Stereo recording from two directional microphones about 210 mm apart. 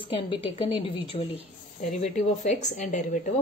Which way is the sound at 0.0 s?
25° left (ahead or behind).